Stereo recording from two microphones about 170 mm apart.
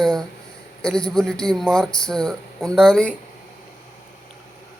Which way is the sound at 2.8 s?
5° right (ahead or behind).